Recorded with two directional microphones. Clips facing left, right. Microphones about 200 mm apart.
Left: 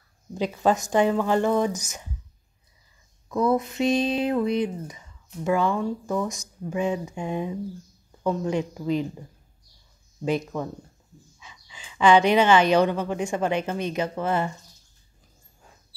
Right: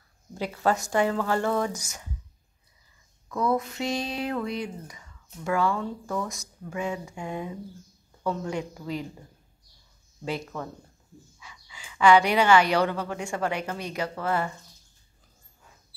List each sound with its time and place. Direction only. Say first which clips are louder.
0.3 s speech: left 3 dB; 15° left (ahead or behind)
3.3 s speech: left 4 dB; 20° left (ahead or behind)
10.2 s speech: left 6 dB; 20° left (ahead or behind)